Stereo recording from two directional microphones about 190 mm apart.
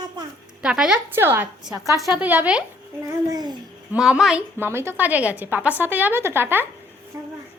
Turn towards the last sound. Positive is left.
turn(degrees=-15)  # may be behind; listen again after turning